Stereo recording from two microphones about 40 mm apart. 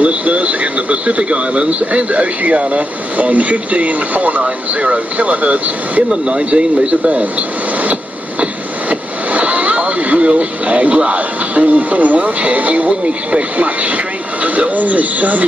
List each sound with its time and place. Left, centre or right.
0.0 s speech: right
4.4 s speech: right
6.2 s speech: right
7.8 s a sound: right
9.3 s radio: right
11.6 s speech: right